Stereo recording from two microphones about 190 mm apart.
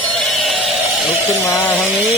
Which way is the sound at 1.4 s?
10° left (ahead or behind).